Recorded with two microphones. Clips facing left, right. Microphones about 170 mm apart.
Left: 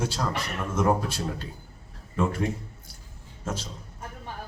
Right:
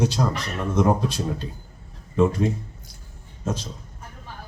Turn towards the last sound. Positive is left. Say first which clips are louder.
# right 4 dB
turn(degrees=-15)  # may be behind; listen again after turning